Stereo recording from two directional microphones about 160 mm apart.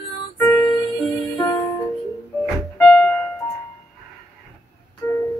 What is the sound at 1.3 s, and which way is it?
Music, 30° left (ahead or behind).